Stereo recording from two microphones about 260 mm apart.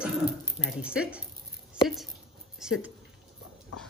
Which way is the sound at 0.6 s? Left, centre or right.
Centre.